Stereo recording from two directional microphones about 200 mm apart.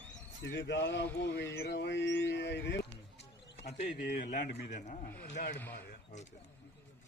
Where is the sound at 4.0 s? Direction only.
45° left (ahead or behind).